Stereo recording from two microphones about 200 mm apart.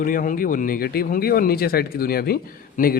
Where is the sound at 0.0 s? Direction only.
45° left (ahead or behind).